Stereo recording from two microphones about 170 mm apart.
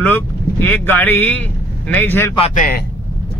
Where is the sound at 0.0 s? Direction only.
10° left (ahead or behind).